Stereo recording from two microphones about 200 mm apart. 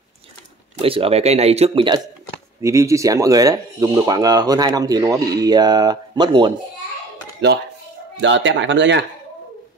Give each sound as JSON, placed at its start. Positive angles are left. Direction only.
{"t": 0.7, "sound": "speech", "side_deg": -25}
{"t": 2.6, "sound": "speech", "side_deg": -15}
{"t": 7.4, "sound": "speech", "side_deg": -60}